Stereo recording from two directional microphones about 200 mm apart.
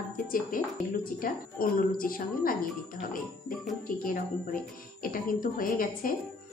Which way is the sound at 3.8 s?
45° left (ahead or behind).